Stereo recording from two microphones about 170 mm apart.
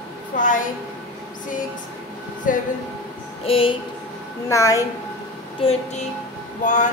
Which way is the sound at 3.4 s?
35° left (ahead or behind).